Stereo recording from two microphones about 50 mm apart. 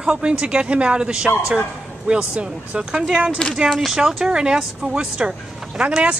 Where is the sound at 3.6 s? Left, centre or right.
Centre.